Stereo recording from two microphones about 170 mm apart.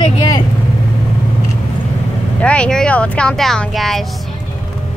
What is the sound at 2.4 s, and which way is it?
Speech, 5° left (ahead or behind).